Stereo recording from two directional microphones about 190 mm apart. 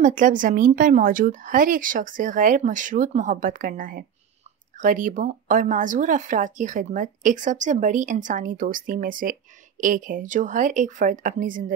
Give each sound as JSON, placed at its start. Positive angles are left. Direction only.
{"t": 0.0, "sound": "speech", "side_deg": -45}